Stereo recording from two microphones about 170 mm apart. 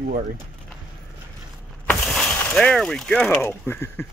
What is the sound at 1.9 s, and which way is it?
Speech, 5° left (ahead or behind).